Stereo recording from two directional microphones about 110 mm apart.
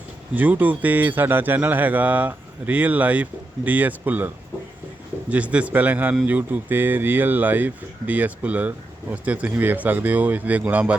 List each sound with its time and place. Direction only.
0.3 s speech: 15° right (ahead or behind)
5.3 s speech: 10° right (ahead or behind)